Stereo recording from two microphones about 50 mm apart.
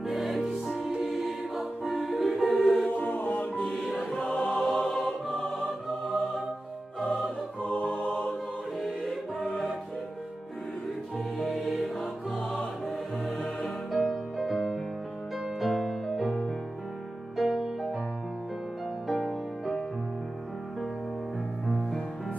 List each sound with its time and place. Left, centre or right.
0.0 s music: centre
3.0 s music: left
3.3 s music: centre
4.2 s choir: centre
4.6 s choir: centre
5.7 s music: centre
7.9 s choir: left
8.8 s music: centre
11.3 s music: centre
19.0 s music: centre
21.6 s music: centre